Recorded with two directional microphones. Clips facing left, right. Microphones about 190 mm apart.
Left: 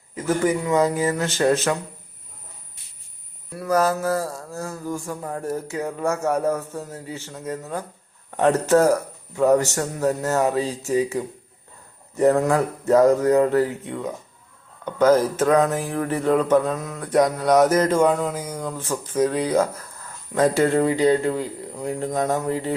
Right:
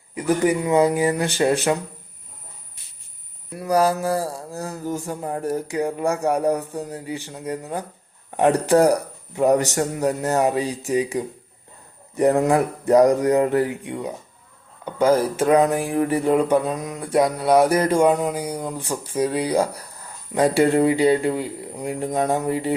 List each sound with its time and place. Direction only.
0.1 s speech: 15° right (ahead or behind)
3.5 s speech: 15° right (ahead or behind)